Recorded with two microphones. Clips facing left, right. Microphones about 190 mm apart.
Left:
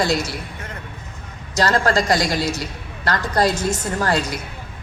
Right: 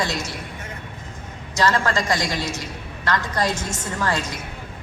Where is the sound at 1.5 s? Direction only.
35° left (ahead or behind).